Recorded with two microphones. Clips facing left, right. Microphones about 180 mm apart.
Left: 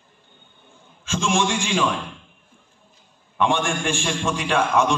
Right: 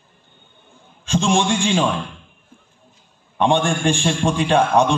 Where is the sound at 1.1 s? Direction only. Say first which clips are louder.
Right 4 dB; 35° right (ahead or behind).